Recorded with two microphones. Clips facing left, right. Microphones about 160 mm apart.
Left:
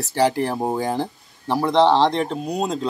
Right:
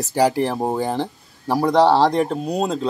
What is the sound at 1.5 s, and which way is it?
Speech, 10° right (ahead or behind).